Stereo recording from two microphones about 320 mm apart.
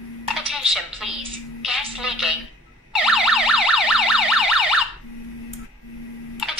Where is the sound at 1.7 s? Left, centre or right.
Centre.